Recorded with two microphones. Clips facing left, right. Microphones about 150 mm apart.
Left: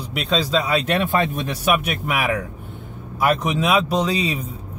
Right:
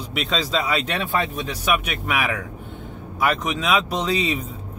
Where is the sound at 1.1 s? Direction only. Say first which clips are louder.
Left 3 dB; 45° left (ahead or behind).